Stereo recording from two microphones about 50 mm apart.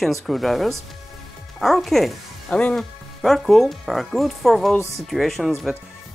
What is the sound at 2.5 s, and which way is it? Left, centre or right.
Speech, centre.